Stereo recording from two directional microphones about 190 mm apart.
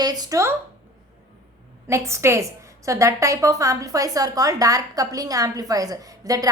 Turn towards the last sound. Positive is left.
turn(degrees=-20)  # may be behind; listen again after turning